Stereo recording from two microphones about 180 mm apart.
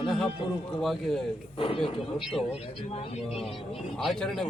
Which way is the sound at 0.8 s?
Centre (ahead or behind).